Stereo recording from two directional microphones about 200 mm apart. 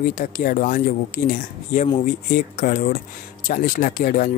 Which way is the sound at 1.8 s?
30° left (ahead or behind).